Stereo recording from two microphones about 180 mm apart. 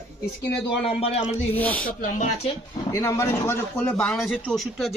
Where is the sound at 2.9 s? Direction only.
15° left (ahead or behind); by 4.9 s centre (ahead or behind).